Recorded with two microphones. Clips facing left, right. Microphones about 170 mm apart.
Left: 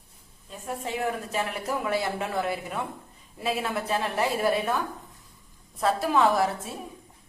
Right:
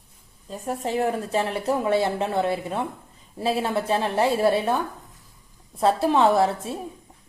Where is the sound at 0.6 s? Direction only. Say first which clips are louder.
Right 5 dB; 35° right (ahead or behind).